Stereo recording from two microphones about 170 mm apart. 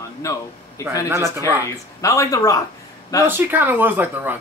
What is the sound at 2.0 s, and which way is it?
Speech, 20° left (ahead or behind).